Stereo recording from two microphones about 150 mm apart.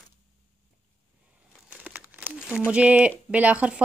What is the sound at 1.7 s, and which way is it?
Crumpling, 10° right (ahead or behind).